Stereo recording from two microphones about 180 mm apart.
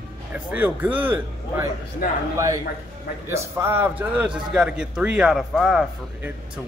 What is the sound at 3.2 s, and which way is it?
A man's voice, 15° right (ahead or behind).